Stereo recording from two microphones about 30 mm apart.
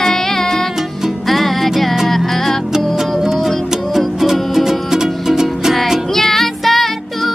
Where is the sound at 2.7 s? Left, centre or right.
Centre.